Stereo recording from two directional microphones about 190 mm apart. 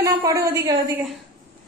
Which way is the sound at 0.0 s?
15° right (ahead or behind).